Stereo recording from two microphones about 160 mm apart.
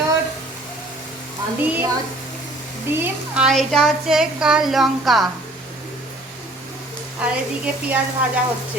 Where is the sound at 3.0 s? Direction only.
5° right (ahead or behind).